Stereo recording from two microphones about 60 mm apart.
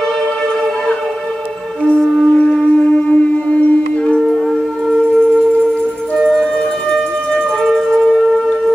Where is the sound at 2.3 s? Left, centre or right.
Centre.